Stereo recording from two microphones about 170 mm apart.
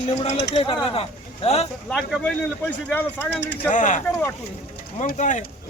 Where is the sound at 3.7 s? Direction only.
45° left (ahead or behind).